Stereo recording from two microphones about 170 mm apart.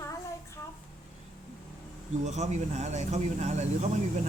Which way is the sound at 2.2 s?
45° right (ahead or behind).